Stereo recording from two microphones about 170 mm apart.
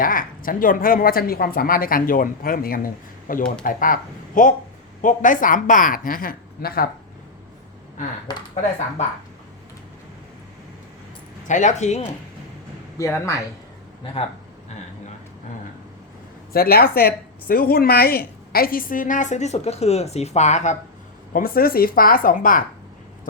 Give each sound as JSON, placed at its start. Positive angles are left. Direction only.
{"t": 0.0, "sound": "a woman's voice", "side_deg": 55}
{"t": 11.4, "sound": "a woman's voice", "side_deg": 45}
{"t": 13.0, "sound": "speech", "side_deg": 20}
{"t": 14.0, "sound": "speech", "side_deg": 35}
{"t": 16.5, "sound": "speech", "side_deg": 60}
{"t": 21.3, "sound": "speech", "side_deg": 60}